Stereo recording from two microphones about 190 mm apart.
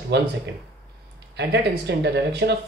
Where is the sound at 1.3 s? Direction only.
65° right (ahead or behind).